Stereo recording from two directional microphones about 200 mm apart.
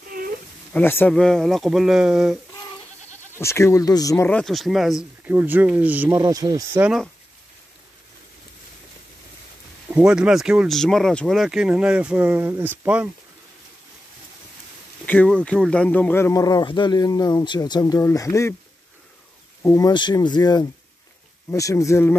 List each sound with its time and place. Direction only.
0.7 s speech: 10° left (ahead or behind)
3.3 s speech: 15° left (ahead or behind); by 6.8 s 20° right (ahead or behind)
6.8 s speech: centre (ahead or behind)
9.8 s speech: 5° right (ahead or behind)
15.0 s speech: 5° left (ahead or behind)
19.6 s speech: 10° left (ahead or behind)
19.9 s speech: 20° left (ahead or behind)